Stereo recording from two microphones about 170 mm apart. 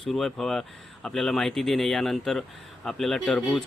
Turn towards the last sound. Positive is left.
turn(degrees=5)  # may be behind; listen again after turning